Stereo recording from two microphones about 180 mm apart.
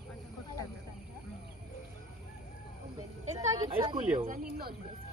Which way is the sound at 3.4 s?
40° right (ahead or behind).